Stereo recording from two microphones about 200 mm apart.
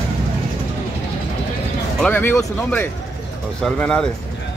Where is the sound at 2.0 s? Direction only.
10° left (ahead or behind).